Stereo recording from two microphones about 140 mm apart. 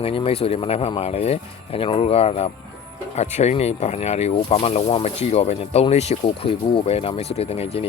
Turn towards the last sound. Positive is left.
turn(degrees=45)  # may be behind; listen again after turning